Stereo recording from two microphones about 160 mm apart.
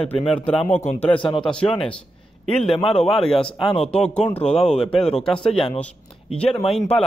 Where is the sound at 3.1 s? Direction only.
Centre (ahead or behind).